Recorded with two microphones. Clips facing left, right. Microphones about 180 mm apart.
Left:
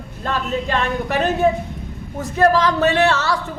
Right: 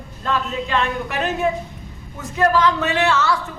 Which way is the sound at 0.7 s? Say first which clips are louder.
Left 1 dB; 40° left (ahead or behind).